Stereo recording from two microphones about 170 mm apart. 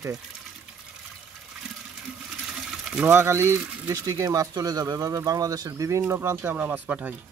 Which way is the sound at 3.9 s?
20° right (ahead or behind).